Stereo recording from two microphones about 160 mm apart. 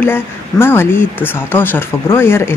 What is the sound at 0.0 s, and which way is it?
Speech, 15° left (ahead or behind).